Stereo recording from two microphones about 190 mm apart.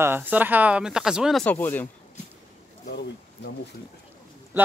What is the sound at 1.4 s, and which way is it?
Speech, 10° left (ahead or behind).